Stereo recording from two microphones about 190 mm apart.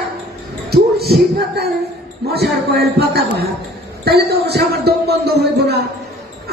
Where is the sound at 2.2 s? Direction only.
60° right (ahead or behind).